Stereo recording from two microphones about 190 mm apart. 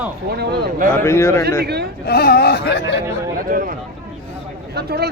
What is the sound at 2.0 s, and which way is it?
Speech, 55° left (ahead or behind).